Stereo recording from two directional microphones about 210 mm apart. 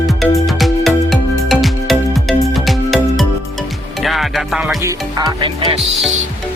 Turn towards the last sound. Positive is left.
turn(degrees=-20)  # may be behind; listen again after turning